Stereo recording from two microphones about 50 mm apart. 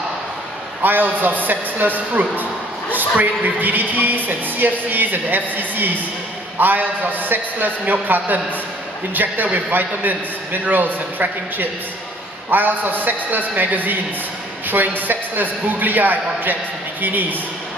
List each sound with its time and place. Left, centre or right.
0.8 s speech: right